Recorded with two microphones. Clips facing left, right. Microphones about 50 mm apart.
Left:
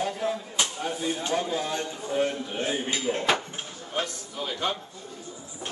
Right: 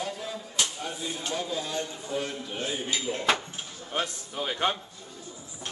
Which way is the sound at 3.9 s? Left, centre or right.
Right.